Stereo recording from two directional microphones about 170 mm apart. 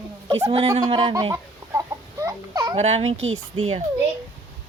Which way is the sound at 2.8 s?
40° right (ahead or behind).